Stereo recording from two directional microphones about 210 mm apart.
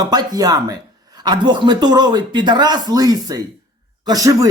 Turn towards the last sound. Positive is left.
turn(degrees=-15)  # may be behind; listen again after turning